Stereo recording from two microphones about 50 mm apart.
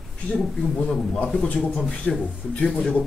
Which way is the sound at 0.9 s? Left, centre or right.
Centre.